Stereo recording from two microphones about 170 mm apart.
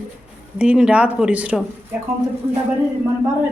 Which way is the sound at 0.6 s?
5° right (ahead or behind).